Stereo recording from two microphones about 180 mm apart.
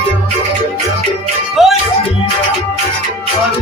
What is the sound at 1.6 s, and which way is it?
Music, centre (ahead or behind).